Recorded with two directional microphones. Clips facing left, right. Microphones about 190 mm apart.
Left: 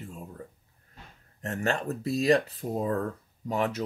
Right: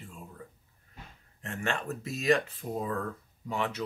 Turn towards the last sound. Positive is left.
turn(degrees=40)  # may be behind; listen again after turning